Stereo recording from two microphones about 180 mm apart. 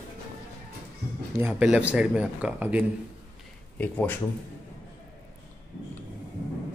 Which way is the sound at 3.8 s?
10° left (ahead or behind).